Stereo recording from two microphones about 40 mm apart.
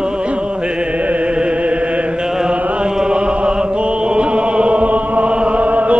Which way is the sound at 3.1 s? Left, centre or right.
Right.